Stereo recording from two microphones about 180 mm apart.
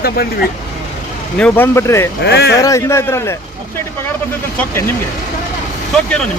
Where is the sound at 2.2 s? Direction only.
65° left (ahead or behind).